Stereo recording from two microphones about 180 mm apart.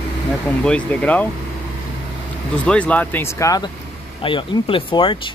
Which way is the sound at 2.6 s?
5° left (ahead or behind).